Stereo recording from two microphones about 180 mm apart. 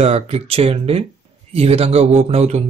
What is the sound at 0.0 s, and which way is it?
Speech, 35° right (ahead or behind).